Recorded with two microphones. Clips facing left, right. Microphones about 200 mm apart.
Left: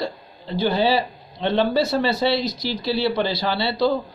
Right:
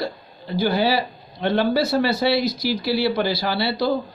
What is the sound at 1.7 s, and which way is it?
Speech, 20° left (ahead or behind).